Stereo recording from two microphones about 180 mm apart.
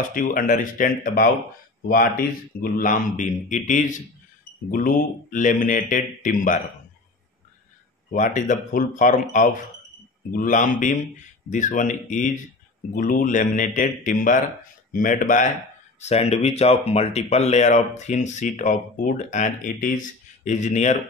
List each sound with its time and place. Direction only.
0.1 s speech: 50° left (ahead or behind)
2.6 s speech: 50° left (ahead or behind)
8.1 s speech: 45° left (ahead or behind)